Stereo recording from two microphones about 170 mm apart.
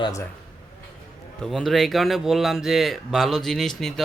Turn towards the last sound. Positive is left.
turn(degrees=0)  # may be behind; listen again after turning